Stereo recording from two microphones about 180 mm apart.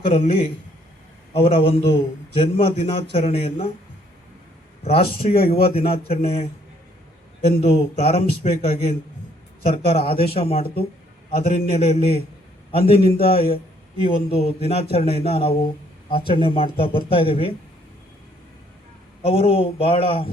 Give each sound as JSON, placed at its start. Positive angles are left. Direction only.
{"t": 0.0, "sound": "speech", "side_deg": 30}
{"t": 4.8, "sound": "speech", "side_deg": 30}
{"t": 7.6, "sound": "speech", "side_deg": 35}
{"t": 19.2, "sound": "speech", "side_deg": 30}